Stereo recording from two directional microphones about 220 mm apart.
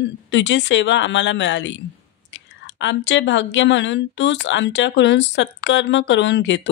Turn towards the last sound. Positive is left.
turn(degrees=55)  # may be behind; listen again after turning